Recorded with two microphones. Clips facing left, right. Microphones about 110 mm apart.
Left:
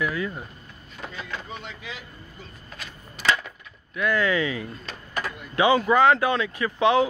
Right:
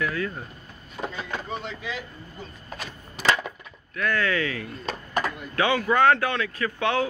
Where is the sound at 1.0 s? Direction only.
45° right (ahead or behind).